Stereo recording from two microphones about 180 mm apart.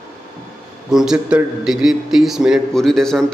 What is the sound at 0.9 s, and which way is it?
A man's voice, 5° right (ahead or behind).